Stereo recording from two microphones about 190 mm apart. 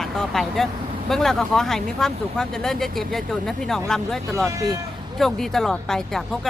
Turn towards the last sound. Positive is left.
turn(degrees=0)  # may be behind; listen again after turning